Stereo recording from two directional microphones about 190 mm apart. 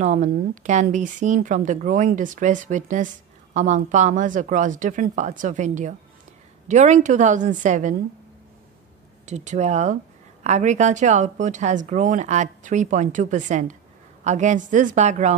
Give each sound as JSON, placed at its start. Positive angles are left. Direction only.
{"t": 0.0, "sound": "speech", "side_deg": -40}
{"t": 9.2, "sound": "speech", "side_deg": -40}